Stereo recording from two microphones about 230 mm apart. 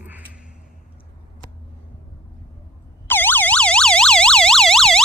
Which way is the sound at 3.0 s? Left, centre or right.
Centre.